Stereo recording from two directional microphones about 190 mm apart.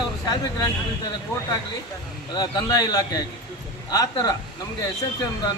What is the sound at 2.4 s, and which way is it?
Speech, 20° left (ahead or behind).